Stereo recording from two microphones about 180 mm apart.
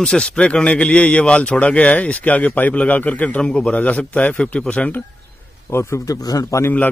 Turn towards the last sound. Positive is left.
turn(degrees=10)  # may be behind; listen again after turning